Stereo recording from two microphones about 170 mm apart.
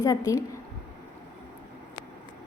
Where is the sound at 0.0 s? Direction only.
20° left (ahead or behind).